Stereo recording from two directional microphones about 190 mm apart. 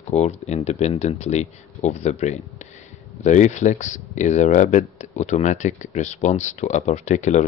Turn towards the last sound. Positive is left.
turn(degrees=40)  # may be behind; listen again after turning